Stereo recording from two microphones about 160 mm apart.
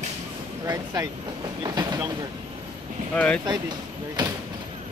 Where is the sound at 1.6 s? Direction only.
25° right (ahead or behind).